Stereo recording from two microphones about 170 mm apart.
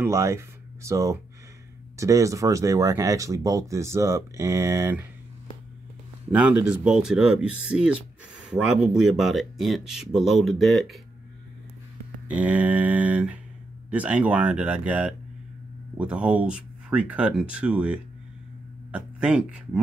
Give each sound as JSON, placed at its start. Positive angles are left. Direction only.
{"t": 0.0, "sound": "speech", "side_deg": -15}
{"t": 6.3, "sound": "speech", "side_deg": -10}
{"t": 12.3, "sound": "speech", "side_deg": -10}